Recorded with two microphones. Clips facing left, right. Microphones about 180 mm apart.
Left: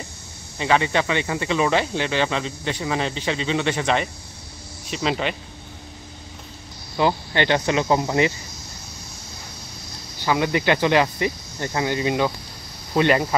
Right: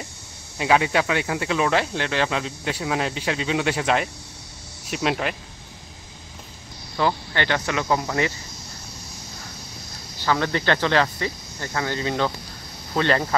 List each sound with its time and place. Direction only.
0.6 s speech: 5° right (ahead or behind)
7.0 s speech: 20° left (ahead or behind)
10.2 s speech: 15° left (ahead or behind)